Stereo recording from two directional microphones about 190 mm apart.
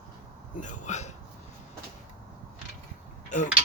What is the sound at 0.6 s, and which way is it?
Speech, 40° left (ahead or behind).